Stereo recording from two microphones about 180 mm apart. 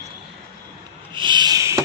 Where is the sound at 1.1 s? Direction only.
25° right (ahead or behind).